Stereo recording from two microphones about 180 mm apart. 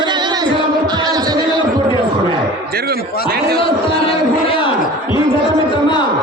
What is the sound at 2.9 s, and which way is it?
Speech, 60° right (ahead or behind).